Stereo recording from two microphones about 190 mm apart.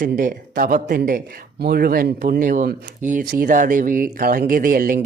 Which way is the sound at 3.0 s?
40° right (ahead or behind).